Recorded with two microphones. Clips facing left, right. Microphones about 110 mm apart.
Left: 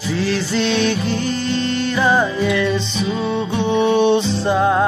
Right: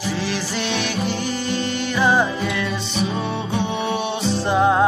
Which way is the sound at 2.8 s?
55° right (ahead or behind).